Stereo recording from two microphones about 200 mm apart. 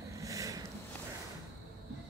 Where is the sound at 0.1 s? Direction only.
15° right (ahead or behind).